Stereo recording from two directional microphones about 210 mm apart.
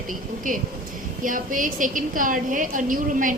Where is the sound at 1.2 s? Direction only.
40° right (ahead or behind).